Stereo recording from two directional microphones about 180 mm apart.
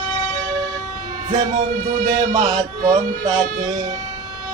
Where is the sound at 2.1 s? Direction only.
25° right (ahead or behind).